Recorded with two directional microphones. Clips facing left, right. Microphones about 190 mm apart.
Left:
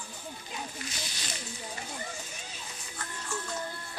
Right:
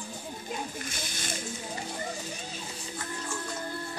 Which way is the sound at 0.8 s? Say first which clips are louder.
Right 3 dB; 50° right (ahead or behind).